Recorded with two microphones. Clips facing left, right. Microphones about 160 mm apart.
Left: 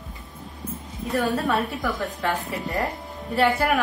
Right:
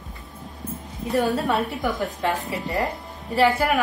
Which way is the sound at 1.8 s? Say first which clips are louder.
Right 2 dB; 20° right (ahead or behind).